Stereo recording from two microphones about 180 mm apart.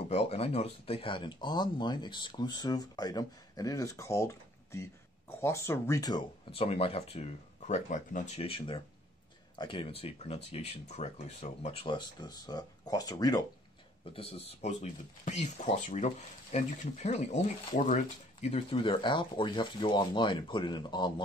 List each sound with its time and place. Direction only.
0.1 s speech: 35° left (ahead or behind)
8.5 s speech: 30° left (ahead or behind)
14.1 s speech: 35° left (ahead or behind)